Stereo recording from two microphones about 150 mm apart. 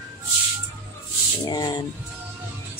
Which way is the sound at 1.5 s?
25° left (ahead or behind).